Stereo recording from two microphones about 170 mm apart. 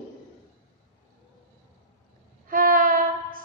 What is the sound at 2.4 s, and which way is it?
Child singing, 55° right (ahead or behind).